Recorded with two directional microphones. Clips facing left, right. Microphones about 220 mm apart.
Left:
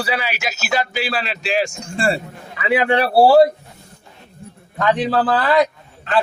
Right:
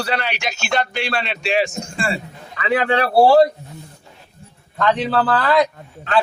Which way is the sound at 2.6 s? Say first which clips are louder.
Left 1 dB; 10° left (ahead or behind).